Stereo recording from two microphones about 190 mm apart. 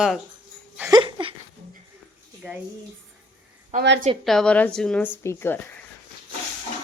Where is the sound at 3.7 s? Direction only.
40° right (ahead or behind).